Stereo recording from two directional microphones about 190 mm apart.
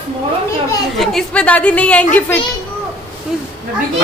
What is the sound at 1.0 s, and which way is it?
A woman's voice, centre (ahead or behind).